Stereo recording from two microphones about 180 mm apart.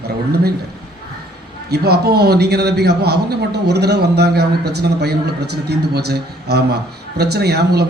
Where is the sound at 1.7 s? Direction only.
60° right (ahead or behind).